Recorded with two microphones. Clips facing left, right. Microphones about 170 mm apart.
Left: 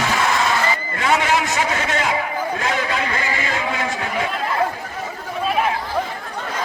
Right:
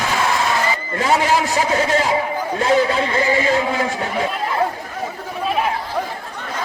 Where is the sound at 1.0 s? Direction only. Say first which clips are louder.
Right 2 dB; 35° right (ahead or behind).